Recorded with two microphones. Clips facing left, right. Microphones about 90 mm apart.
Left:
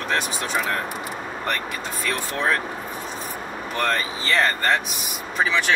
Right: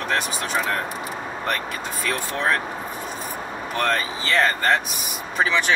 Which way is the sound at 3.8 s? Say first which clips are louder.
Right 1 dB; centre (ahead or behind).